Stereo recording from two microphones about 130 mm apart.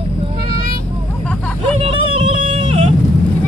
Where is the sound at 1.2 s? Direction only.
10° left (ahead or behind).